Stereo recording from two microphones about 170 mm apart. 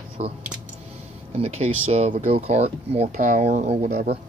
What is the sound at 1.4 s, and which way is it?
Speech, 40° right (ahead or behind).